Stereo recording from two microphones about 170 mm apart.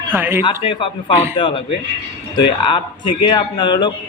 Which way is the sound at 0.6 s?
30° left (ahead or behind).